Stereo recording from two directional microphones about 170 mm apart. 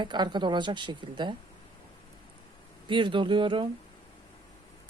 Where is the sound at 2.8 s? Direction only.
30° right (ahead or behind).